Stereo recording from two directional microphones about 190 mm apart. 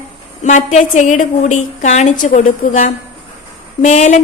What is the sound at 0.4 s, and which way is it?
A woman's voice, 40° left (ahead or behind).